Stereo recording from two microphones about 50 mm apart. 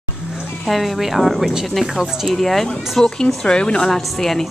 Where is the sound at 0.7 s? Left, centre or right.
Centre.